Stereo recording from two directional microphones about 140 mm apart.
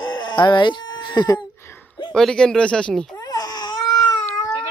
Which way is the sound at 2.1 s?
5° left (ahead or behind).